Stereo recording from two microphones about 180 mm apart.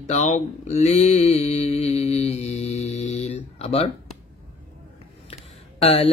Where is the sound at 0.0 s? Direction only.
40° left (ahead or behind).